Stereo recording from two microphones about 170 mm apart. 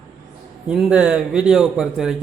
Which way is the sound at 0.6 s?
5° right (ahead or behind).